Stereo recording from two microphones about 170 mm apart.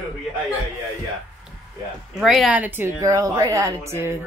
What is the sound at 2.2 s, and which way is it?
A woman's voice, centre (ahead or behind).